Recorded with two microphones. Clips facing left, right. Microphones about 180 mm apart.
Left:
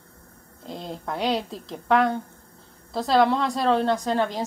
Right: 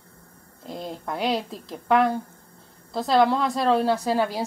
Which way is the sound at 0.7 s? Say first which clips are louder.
Even; centre (ahead or behind).